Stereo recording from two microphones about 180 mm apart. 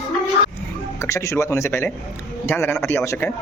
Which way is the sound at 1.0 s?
15° left (ahead or behind).